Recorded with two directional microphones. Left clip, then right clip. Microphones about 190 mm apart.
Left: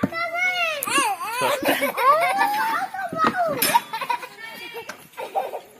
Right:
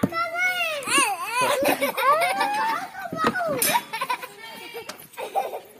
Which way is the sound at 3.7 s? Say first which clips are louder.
Left 3 dB; 30° right (ahead or behind).